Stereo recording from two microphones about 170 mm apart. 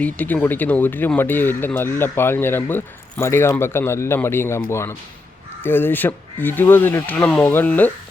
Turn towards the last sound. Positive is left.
turn(degrees=10)  # may be behind; listen again after turning